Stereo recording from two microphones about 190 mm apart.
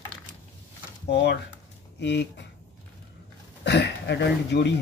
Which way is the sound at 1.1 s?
60° left (ahead or behind).